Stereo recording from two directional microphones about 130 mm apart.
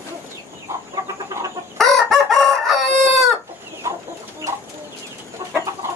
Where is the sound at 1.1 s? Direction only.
25° right (ahead or behind).